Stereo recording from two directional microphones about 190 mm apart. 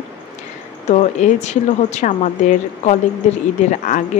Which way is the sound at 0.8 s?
35° left (ahead or behind).